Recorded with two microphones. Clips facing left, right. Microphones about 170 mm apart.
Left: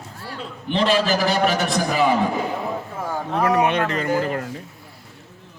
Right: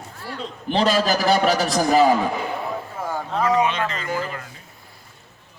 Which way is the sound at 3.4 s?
60° left (ahead or behind).